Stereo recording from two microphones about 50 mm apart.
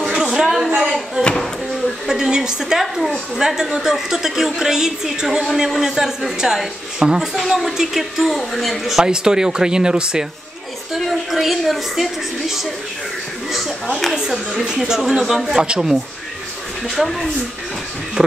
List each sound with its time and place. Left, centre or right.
0.1 s a sound: centre
2.0 s a woman's voice: centre
2.8 s a woman's voice: centre
11.0 s a woman's voice: centre
14.1 s a woman's voice: centre
16.8 s a woman's voice: centre